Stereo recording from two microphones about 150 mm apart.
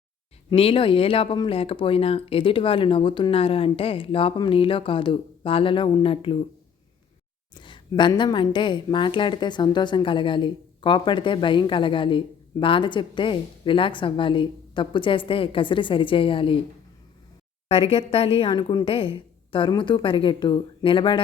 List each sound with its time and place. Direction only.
0.5 s a woman's voice: 40° left (ahead or behind)
7.5 s a woman's voice: 30° left (ahead or behind)
17.7 s a woman's voice: 40° left (ahead or behind)